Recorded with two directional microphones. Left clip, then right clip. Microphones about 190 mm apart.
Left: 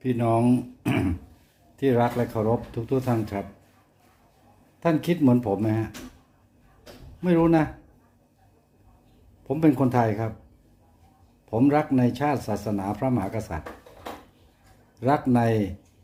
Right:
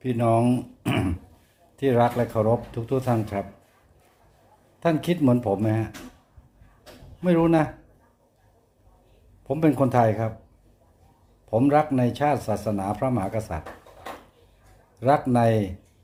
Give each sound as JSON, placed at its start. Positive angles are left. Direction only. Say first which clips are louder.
{"t": 0.0, "sound": "a sound", "louder": "right 1 dB", "side_deg": -10}
{"t": 1.7, "sound": "a man's voice", "louder": "right 2 dB", "side_deg": -10}
{"t": 4.8, "sound": "a man's voice", "louder": "even", "side_deg": -10}
{"t": 7.2, "sound": "a man's voice", "louder": "even", "side_deg": -10}
{"t": 9.5, "sound": "a man's voice", "louder": "even", "side_deg": -10}
{"t": 11.5, "sound": "a man's voice", "louder": "right 2 dB", "side_deg": -10}
{"t": 14.9, "sound": "a man's voice", "louder": "right 2 dB", "side_deg": -10}